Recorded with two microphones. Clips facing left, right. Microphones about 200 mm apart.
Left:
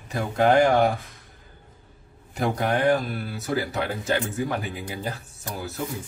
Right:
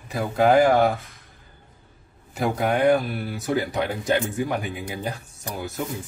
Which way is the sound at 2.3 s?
5° right (ahead or behind).